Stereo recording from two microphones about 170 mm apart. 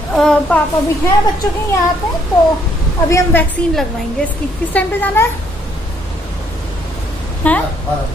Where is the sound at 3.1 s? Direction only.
10° left (ahead or behind).